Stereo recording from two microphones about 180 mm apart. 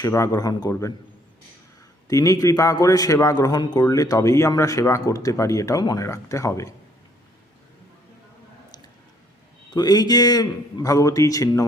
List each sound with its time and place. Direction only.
0.0 s a man's voice: 15° left (ahead or behind)
2.0 s a man's voice: 20° left (ahead or behind)
9.7 s a man's voice: 20° left (ahead or behind)